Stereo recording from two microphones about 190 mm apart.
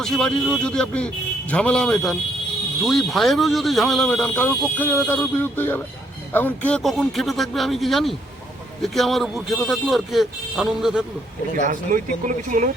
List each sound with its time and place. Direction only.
0.0 s a man's voice: centre (ahead or behind)
11.6 s speech: 45° right (ahead or behind)